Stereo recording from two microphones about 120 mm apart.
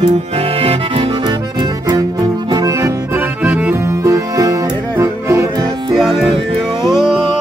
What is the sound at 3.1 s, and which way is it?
Accordion, 15° right (ahead or behind).